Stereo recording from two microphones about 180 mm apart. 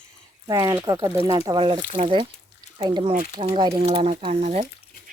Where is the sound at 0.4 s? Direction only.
20° right (ahead or behind).